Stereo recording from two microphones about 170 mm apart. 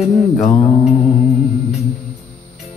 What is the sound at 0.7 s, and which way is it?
Mantra, 35° left (ahead or behind).